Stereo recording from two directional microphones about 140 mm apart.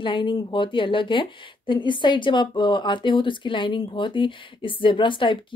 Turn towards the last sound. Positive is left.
turn(degrees=35)  # may be behind; listen again after turning